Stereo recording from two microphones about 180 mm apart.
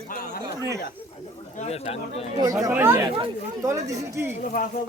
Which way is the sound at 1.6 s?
35° left (ahead or behind).